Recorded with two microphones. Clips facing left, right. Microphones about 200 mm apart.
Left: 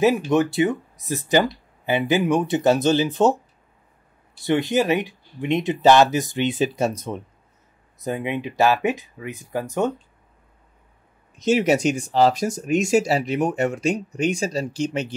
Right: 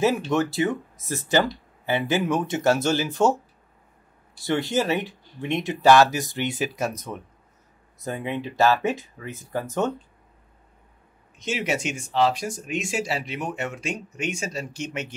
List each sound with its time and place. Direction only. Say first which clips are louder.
0.3 s speech: left 4 dB; 15° left (ahead or behind)
4.5 s speech: left 4 dB; 15° left (ahead or behind)
6.7 s speech: left 5 dB; 30° left (ahead or behind)
8.0 s speech: left 3 dB; 15° left (ahead or behind)
11.3 s speech: left 9 dB; 40° left (ahead or behind)